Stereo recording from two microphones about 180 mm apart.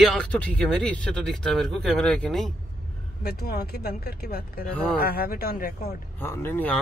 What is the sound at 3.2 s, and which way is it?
Speech, 60° left (ahead or behind).